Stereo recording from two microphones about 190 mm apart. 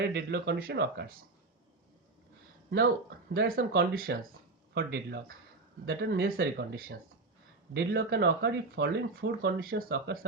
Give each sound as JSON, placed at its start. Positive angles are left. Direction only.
{"t": 0.0, "sound": "speech", "side_deg": -60}
{"t": 2.6, "sound": "speech", "side_deg": -60}